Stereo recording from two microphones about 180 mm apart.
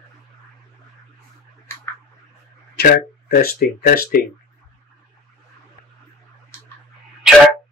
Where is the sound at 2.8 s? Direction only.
60° left (ahead or behind).